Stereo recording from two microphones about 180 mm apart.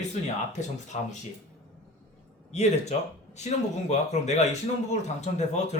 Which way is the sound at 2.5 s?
40° left (ahead or behind).